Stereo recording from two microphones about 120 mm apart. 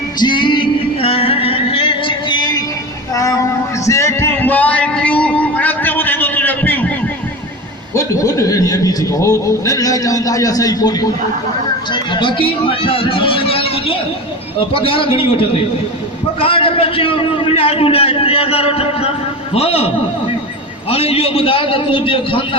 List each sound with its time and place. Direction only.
0.2 s music: 40° left (ahead or behind); by 6.9 s 15° left (ahead or behind)
7.9 s a man's voice: 25° left (ahead or behind)
11.9 s a man's voice: 40° left (ahead or behind)
20.9 s a man's voice: 55° left (ahead or behind)